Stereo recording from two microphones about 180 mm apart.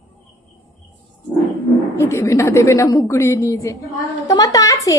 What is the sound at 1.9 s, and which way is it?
A woman's voice, 15° left (ahead or behind).